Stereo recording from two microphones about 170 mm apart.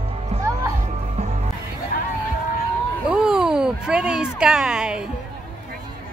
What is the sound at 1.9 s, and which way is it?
Vehicle, 60° left (ahead or behind).